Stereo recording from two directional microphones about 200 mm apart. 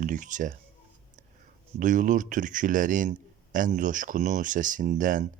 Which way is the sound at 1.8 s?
40° right (ahead or behind).